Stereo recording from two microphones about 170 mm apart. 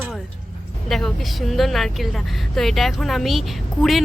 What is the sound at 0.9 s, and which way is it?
A woman's voice, centre (ahead or behind).